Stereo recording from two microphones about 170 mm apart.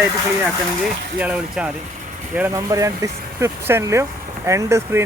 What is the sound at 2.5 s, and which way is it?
Speech, 20° right (ahead or behind).